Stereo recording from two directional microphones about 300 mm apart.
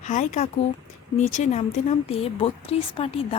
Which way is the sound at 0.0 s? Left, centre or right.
Left.